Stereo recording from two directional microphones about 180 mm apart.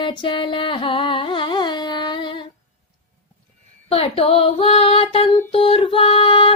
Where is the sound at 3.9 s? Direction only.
30° left (ahead or behind).